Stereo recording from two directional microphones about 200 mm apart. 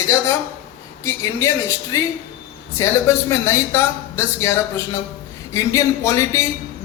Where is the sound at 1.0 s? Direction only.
15° left (ahead or behind).